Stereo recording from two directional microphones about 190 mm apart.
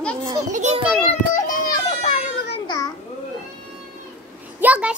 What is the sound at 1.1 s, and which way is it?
Children playing, 45° left (ahead or behind).